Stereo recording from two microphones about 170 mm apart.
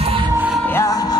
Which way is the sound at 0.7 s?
20° left (ahead or behind).